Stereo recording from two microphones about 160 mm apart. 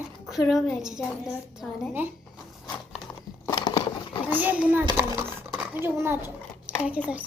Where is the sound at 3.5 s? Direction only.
30° left (ahead or behind).